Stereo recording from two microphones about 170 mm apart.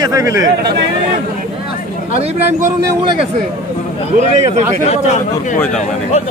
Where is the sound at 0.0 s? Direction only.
20° right (ahead or behind).